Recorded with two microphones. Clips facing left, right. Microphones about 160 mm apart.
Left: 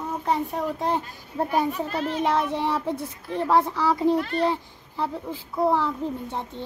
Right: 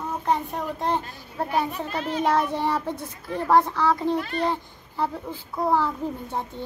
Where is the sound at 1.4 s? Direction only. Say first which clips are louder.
Left 1 dB; 15° left (ahead or behind).